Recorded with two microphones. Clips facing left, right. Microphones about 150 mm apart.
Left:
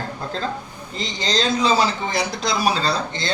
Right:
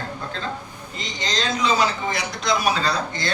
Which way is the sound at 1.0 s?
30° left (ahead or behind).